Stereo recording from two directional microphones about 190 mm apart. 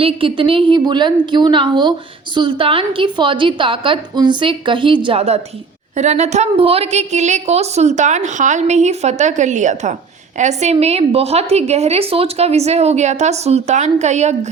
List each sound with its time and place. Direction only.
0.0 s a woman's voice: 30° right (ahead or behind)